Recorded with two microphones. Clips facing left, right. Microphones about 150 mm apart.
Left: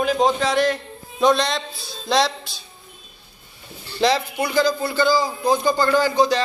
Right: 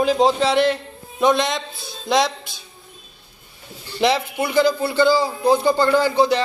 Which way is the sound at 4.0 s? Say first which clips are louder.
Even; 20° right (ahead or behind).